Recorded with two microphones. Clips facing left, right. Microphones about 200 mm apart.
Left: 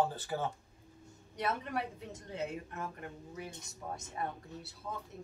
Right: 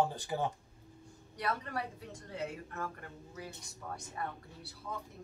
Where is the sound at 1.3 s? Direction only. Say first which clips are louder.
Left 1 dB; 20° left (ahead or behind).